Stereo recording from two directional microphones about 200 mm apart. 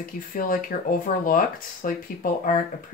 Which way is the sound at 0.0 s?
45° left (ahead or behind).